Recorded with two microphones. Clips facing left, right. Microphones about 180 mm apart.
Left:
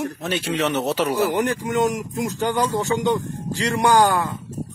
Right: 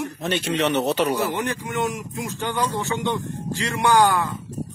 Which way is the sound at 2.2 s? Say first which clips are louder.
Left 4 dB; 40° left (ahead or behind).